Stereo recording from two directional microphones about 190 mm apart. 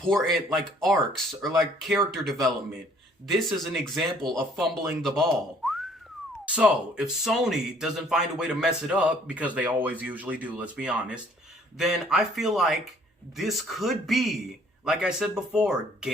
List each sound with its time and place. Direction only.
0.1 s speech: centre (ahead or behind)